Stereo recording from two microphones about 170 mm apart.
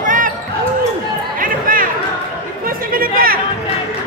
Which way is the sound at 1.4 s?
55° right (ahead or behind).